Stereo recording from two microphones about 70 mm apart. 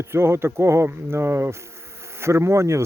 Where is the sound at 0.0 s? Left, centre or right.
Right.